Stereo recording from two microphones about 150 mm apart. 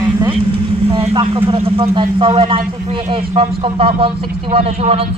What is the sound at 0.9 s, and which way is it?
A man's voice, 35° right (ahead or behind).